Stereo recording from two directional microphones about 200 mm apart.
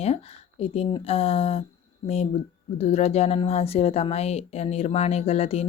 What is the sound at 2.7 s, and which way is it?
A woman's voice, 30° left (ahead or behind).